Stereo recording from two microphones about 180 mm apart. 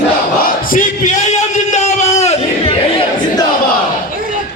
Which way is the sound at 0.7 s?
45° left (ahead or behind).